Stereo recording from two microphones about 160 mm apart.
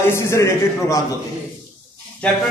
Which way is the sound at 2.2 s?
5° left (ahead or behind).